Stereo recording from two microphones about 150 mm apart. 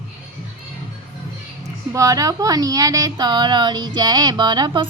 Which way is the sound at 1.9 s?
20° right (ahead or behind).